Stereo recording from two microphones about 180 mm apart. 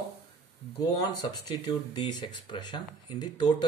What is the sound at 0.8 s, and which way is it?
Speech, 20° left (ahead or behind).